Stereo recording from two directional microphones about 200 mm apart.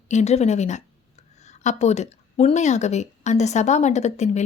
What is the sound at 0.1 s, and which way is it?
A woman's voice, 35° left (ahead or behind).